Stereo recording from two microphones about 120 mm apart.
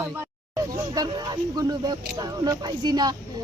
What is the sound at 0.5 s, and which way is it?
A woman's voice, 30° right (ahead or behind).